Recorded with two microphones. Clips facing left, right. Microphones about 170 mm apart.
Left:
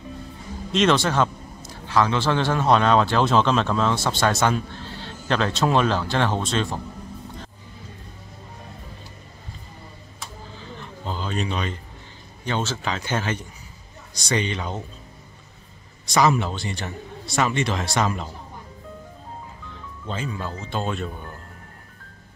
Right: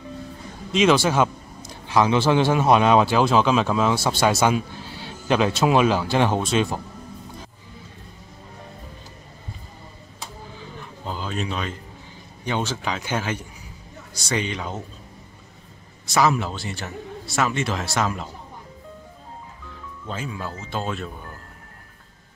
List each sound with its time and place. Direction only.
0.7 s a man's voice: 5° right (ahead or behind)
10.8 s a sound: 5° right (ahead or behind)
12.4 s a man's voice: 10° right (ahead or behind)
16.1 s a man's voice: 5° right (ahead or behind)
20.1 s a man's voice: 5° right (ahead or behind)